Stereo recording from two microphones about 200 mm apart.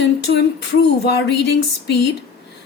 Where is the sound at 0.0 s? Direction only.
60° left (ahead or behind).